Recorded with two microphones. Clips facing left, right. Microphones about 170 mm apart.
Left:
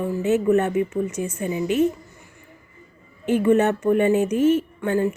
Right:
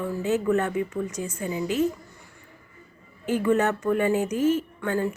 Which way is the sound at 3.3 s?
25° left (ahead or behind).